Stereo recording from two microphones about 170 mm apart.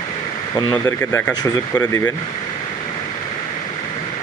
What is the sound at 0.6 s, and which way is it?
Speech, 20° left (ahead or behind).